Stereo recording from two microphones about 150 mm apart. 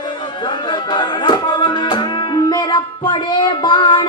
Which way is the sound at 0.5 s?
30° left (ahead or behind).